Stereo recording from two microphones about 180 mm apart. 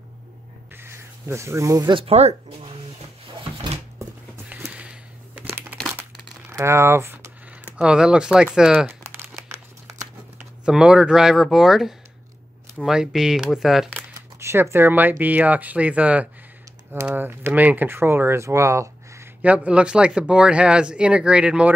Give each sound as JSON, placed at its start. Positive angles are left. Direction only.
{"t": 0.7, "sound": "speech", "side_deg": -15}
{"t": 4.5, "sound": "a sound", "side_deg": -10}
{"t": 6.5, "sound": "speech", "side_deg": -15}
{"t": 9.0, "sound": "crumpling", "side_deg": -15}
{"t": 10.6, "sound": "speech", "side_deg": -5}